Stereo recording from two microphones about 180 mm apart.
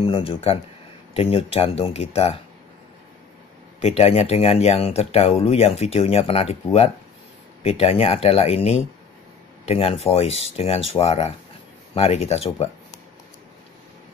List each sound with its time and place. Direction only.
0.0 s speech: 30° left (ahead or behind)
3.8 s speech: 35° left (ahead or behind)